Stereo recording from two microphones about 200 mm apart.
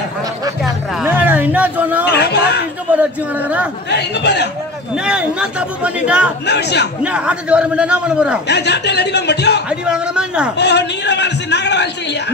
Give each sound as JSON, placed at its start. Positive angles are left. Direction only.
{"t": 1.0, "sound": "a sound", "side_deg": -10}
{"t": 2.0, "sound": "a sound", "side_deg": 55}
{"t": 2.9, "sound": "a man's voice", "side_deg": -5}
{"t": 3.9, "sound": "a man's voice", "side_deg": 60}
{"t": 4.9, "sound": "a man's voice", "side_deg": -5}
{"t": 6.4, "sound": "a man's voice", "side_deg": 60}
{"t": 7.0, "sound": "a man's voice", "side_deg": -5}
{"t": 8.5, "sound": "a man's voice", "side_deg": 60}
{"t": 9.7, "sound": "a man's voice", "side_deg": -5}
{"t": 10.6, "sound": "a man's voice", "side_deg": 60}